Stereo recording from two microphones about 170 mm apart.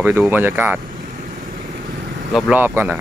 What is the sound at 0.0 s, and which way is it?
Speech, 10° right (ahead or behind).